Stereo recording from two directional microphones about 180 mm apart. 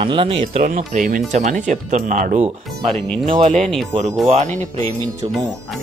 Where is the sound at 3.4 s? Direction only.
40° right (ahead or behind).